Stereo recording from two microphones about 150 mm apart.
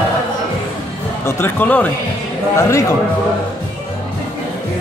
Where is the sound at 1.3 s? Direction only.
15° left (ahead or behind).